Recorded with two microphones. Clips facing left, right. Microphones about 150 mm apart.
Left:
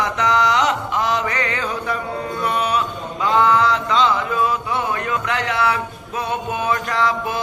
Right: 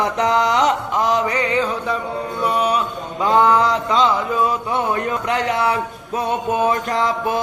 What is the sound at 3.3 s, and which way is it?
Mantra, 40° right (ahead or behind).